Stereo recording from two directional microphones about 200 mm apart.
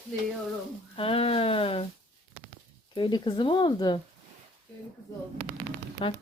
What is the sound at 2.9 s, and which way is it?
Speech, 25° left (ahead or behind).